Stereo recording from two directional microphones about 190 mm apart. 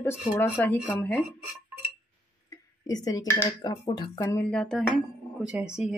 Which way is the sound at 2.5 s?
20° left (ahead or behind).